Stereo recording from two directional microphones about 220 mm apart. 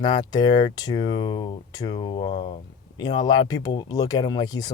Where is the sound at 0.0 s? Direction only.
20° left (ahead or behind).